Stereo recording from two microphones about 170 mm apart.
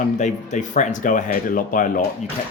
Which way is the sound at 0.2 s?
45° left (ahead or behind).